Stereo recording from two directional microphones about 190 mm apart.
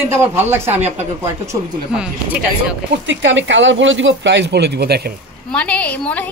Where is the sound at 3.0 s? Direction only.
80° right; by 5.1 s 55° right (ahead or behind).